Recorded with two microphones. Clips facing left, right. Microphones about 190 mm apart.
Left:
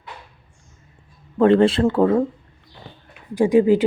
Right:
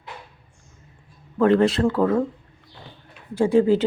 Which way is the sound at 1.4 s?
30° left (ahead or behind).